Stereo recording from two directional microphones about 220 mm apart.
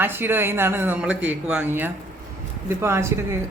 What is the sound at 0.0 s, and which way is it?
Speech, 10° right (ahead or behind).